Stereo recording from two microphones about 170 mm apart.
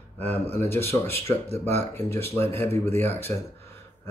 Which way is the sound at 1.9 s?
15° left (ahead or behind).